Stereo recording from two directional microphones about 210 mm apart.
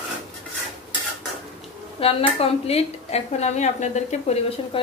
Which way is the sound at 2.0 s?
30° left (ahead or behind).